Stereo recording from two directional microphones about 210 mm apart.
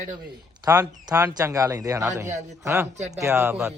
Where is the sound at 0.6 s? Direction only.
15° right (ahead or behind).